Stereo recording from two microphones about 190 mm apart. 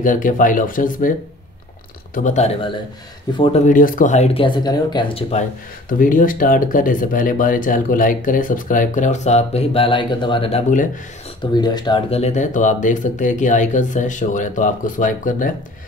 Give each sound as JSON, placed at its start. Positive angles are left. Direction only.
{"t": 0.0, "sound": "speech", "side_deg": 45}
{"t": 2.1, "sound": "speech", "side_deg": 40}
{"t": 3.6, "sound": "speech", "side_deg": 45}
{"t": 5.9, "sound": "speech", "side_deg": 45}